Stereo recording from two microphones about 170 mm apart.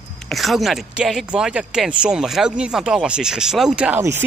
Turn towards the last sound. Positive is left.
turn(degrees=-5)  # may be behind; listen again after turning